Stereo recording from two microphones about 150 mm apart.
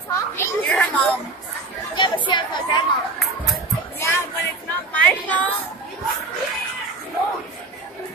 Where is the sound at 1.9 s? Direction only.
30° left (ahead or behind).